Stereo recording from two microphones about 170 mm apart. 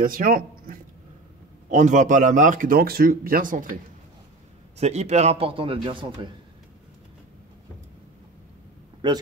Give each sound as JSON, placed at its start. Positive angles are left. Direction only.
{"t": 0.0, "sound": "speech", "side_deg": -55}
{"t": 4.7, "sound": "a man's voice", "side_deg": -40}
{"t": 9.0, "sound": "speech", "side_deg": -30}